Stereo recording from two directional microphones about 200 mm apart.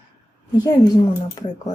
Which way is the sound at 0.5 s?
20° left (ahead or behind).